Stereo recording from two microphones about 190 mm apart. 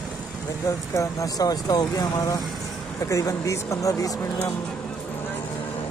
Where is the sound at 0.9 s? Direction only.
20° left (ahead or behind).